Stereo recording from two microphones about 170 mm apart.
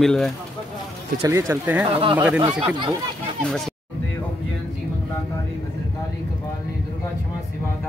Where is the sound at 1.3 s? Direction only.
15° right (ahead or behind).